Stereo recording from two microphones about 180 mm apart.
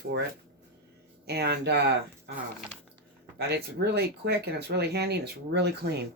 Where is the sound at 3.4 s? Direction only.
70° right (ahead or behind).